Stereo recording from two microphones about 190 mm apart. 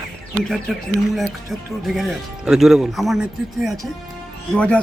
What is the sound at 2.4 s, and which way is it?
Speech, centre (ahead or behind).